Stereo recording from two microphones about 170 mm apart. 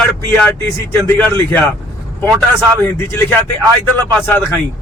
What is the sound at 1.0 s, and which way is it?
A man's voice, 10° left (ahead or behind).